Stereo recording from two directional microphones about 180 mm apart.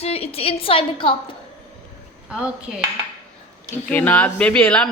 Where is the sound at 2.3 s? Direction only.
5° right (ahead or behind).